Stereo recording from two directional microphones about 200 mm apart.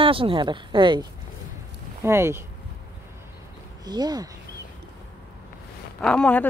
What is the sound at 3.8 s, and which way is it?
Speech, 20° right (ahead or behind).